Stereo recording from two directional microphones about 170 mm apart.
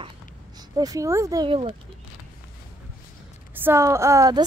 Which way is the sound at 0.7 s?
20° right (ahead or behind).